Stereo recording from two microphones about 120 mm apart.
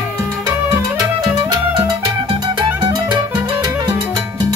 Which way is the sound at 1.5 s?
30° right (ahead or behind).